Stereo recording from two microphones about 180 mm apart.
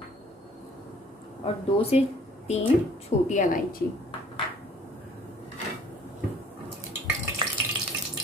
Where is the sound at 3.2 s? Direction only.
45° left (ahead or behind).